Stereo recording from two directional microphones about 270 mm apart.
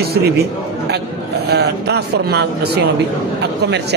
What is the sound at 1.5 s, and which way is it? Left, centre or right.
Speech, right.